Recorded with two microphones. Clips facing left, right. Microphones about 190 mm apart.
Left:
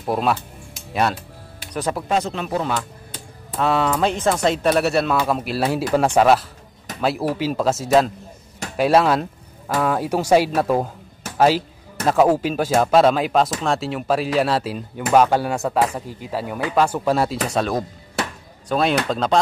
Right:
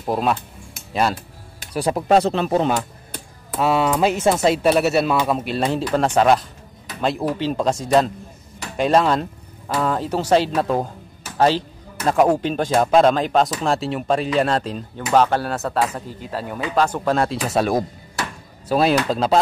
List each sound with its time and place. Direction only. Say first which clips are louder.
0.0 s speech: even; centre (ahead or behind)
1.7 s speech: right 3 dB; 15° right (ahead or behind)
2.1 s speech: right 7 dB; 35° right (ahead or behind)
3.5 s speech: right 1 dB; 5° right (ahead or behind)
17.6 s speech: right 4 dB; 10° right (ahead or behind)